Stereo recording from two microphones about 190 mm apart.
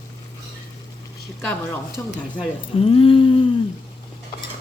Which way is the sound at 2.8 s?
30° left (ahead or behind).